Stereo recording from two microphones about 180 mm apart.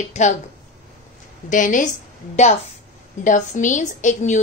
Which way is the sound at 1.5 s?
45° left (ahead or behind).